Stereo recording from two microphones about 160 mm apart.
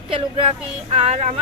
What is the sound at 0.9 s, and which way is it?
Speech, 45° right (ahead or behind).